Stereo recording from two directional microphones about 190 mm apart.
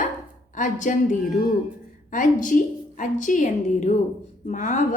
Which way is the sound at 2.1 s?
45° left (ahead or behind).